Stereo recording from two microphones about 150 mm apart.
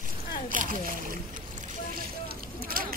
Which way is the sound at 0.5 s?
65° right (ahead or behind).